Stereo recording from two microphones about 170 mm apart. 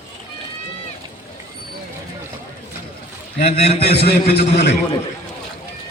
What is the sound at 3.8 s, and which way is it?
Speech, 70° left (ahead or behind).